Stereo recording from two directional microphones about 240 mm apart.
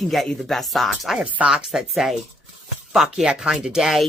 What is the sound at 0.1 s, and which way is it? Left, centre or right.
Speech, centre.